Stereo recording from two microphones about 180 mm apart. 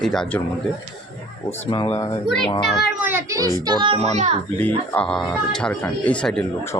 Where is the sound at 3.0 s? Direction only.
15° right (ahead or behind).